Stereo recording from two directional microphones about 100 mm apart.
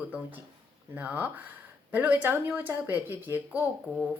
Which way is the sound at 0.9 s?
15° right (ahead or behind).